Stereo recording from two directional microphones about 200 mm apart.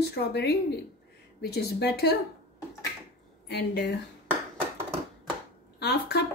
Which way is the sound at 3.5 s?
60° left (ahead or behind).